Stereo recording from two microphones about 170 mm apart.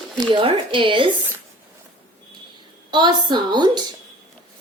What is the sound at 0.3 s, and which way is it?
Speech, 30° right (ahead or behind).